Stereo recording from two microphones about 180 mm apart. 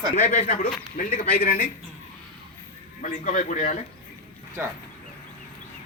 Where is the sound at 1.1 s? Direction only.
55° left (ahead or behind).